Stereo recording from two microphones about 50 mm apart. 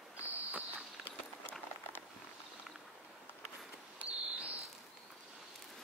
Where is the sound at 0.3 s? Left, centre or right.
Right.